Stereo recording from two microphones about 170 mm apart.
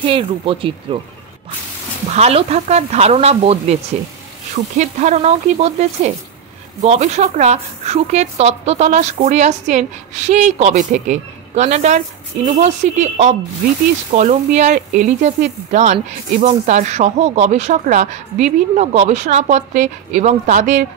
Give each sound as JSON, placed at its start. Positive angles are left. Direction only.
{"t": 0.0, "sound": "speech", "side_deg": -30}
{"t": 2.0, "sound": "speech", "side_deg": -40}
{"t": 4.7, "sound": "speech", "side_deg": -45}